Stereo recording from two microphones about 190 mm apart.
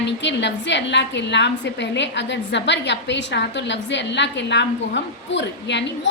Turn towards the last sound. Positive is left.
turn(degrees=65)  # may be behind; listen again after turning